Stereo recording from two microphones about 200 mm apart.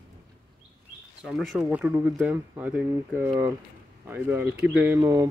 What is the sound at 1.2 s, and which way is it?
Speech, centre (ahead or behind).